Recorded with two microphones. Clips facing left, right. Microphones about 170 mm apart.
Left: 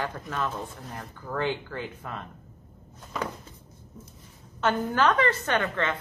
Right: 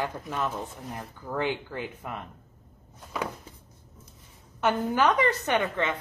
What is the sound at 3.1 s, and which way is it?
Cupboard open or close, 5° right (ahead or behind).